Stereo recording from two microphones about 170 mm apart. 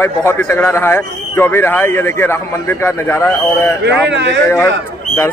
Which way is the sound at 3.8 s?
90° right.